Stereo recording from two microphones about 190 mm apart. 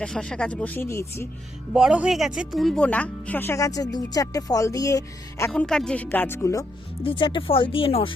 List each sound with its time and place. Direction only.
0.0 s speech: 5° left (ahead or behind)
1.7 s speech: 5° right (ahead or behind); by 5.5 s 20° left (ahead or behind)
5.5 s speech: 5° left (ahead or behind)
7.0 s speech: 25° left (ahead or behind)